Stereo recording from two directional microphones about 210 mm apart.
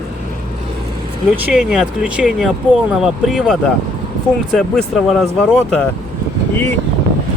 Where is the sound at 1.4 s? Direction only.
5° right (ahead or behind).